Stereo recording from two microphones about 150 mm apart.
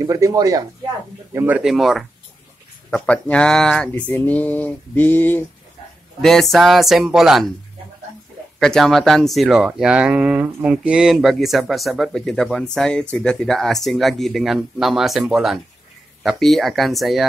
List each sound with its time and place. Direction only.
0.0 s speech: 20° right (ahead or behind)
1.6 s speech: centre (ahead or behind)
6.2 s speech: centre (ahead or behind)
8.5 s speech: 5° left (ahead or behind)